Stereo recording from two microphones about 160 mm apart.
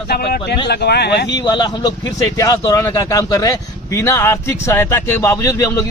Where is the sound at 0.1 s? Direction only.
75° left (ahead or behind).